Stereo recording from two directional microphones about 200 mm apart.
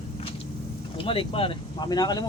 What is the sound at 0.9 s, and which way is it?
Speech, 25° left (ahead or behind).